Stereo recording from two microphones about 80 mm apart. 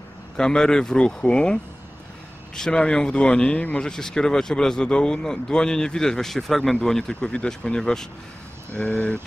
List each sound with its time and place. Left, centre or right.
0.4 s speech: centre